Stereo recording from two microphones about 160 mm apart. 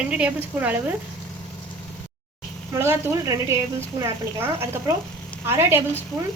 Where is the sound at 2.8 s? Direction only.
15° right (ahead or behind).